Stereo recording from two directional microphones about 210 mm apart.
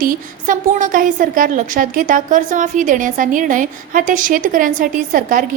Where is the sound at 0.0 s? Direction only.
40° right (ahead or behind).